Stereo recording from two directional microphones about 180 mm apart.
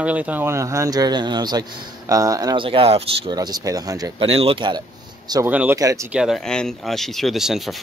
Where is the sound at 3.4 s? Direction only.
20° right (ahead or behind).